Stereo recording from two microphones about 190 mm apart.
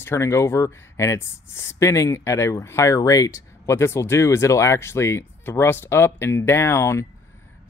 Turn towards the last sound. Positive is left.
turn(degrees=15)  # may be behind; listen again after turning